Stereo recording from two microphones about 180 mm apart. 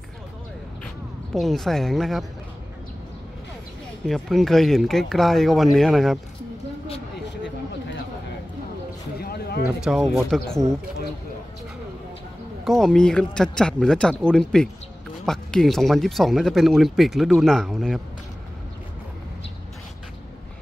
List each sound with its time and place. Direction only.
1.3 s speech: centre (ahead or behind)
4.0 s speech: centre (ahead or behind)
9.2 s a sound: 60° left (ahead or behind)
9.8 s speech: centre (ahead or behind)
12.6 s speech: centre (ahead or behind)